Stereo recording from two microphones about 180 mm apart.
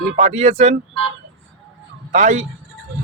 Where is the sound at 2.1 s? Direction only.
45° right (ahead or behind).